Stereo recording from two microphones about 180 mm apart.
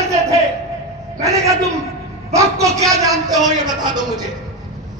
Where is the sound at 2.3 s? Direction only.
15° right (ahead or behind).